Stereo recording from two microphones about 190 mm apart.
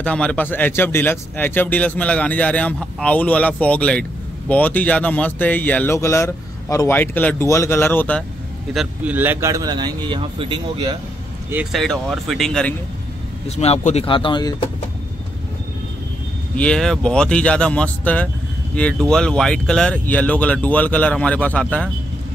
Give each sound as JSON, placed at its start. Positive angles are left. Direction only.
{"t": 0.0, "sound": "speech", "side_deg": 5}
{"t": 8.7, "sound": "a man's voice", "side_deg": -10}
{"t": 11.5, "sound": "speech", "side_deg": 0}
{"t": 13.6, "sound": "speech", "side_deg": 35}
{"t": 16.5, "sound": "speech", "side_deg": 5}